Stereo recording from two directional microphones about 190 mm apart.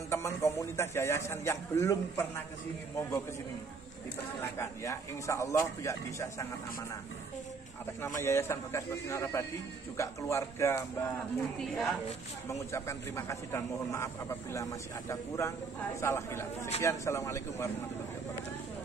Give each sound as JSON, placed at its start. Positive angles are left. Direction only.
{"t": 0.1, "sound": "a man's voice", "side_deg": 15}
{"t": 4.6, "sound": "a man's voice", "side_deg": 15}
{"t": 8.0, "sound": "a man's voice", "side_deg": 15}
{"t": 11.6, "sound": "a woman's voice", "side_deg": 0}
{"t": 12.4, "sound": "a man's voice", "side_deg": 15}